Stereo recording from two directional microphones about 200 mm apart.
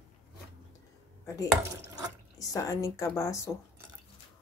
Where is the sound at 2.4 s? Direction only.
15° left (ahead or behind).